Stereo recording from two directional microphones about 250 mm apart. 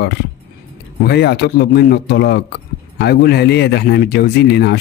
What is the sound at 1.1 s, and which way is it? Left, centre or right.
A man's voice, left.